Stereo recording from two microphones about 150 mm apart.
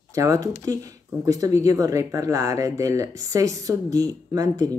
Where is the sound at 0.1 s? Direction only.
20° right (ahead or behind).